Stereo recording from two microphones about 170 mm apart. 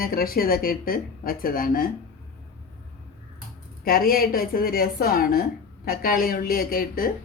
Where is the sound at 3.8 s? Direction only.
60° left (ahead or behind).